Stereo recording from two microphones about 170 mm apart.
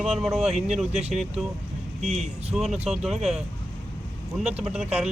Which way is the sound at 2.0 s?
40° right (ahead or behind).